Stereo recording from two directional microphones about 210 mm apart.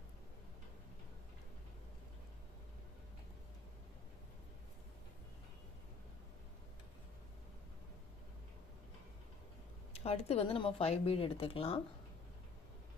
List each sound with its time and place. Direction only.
9.9 s speech: 30° left (ahead or behind)